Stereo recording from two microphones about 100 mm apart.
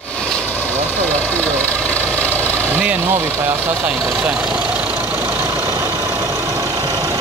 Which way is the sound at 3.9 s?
Centre (ahead or behind).